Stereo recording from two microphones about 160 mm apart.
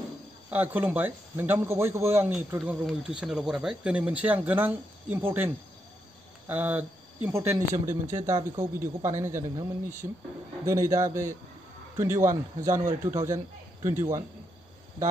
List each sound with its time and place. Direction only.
0.5 s a man's voice: 10° right (ahead or behind)